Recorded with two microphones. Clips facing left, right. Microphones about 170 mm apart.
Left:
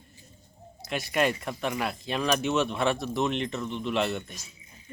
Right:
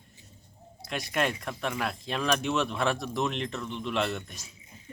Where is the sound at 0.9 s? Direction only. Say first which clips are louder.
Left 3 dB; 5° left (ahead or behind).